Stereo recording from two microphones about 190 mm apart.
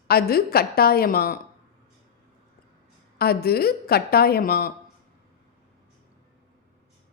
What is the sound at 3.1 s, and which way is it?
Speech, 55° left (ahead or behind).